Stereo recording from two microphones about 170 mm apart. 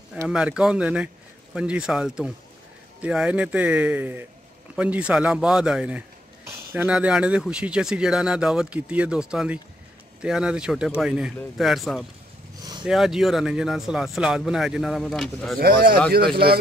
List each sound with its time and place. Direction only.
0.3 s a man's voice: 5° right (ahead or behind)
15.6 s speech: 60° right (ahead or behind)